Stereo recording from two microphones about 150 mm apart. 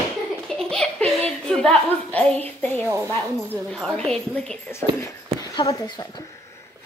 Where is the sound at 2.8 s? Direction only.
20° right (ahead or behind).